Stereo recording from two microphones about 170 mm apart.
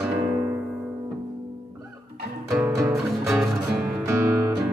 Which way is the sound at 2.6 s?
15° right (ahead or behind).